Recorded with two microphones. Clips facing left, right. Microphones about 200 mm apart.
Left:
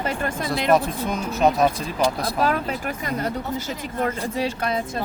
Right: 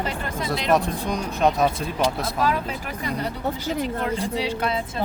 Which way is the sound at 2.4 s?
50° left (ahead or behind).